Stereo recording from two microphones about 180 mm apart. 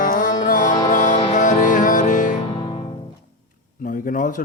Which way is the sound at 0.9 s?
45° left (ahead or behind).